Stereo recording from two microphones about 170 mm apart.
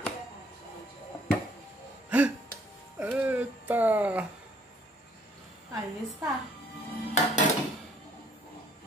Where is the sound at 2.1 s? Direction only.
10° right (ahead or behind).